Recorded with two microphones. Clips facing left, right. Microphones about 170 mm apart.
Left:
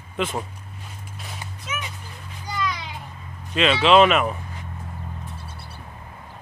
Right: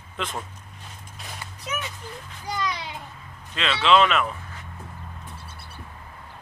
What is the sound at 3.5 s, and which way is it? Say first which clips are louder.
Speech: left 4 dB; 15° left (ahead or behind).